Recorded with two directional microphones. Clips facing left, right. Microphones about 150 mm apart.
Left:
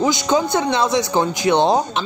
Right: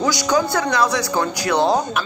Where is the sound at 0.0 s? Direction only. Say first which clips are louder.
Left 1 dB; 20° left (ahead or behind).